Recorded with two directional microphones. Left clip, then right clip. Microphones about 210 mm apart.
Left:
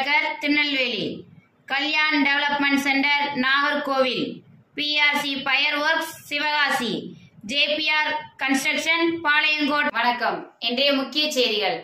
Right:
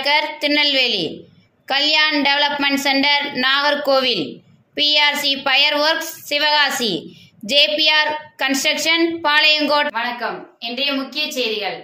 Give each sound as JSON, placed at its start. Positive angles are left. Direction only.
{"t": 0.0, "sound": "a woman's voice", "side_deg": -45}
{"t": 9.9, "sound": "a woman's voice", "side_deg": 0}